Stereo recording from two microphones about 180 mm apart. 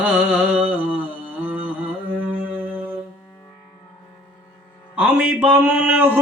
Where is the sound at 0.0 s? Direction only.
10° right (ahead or behind).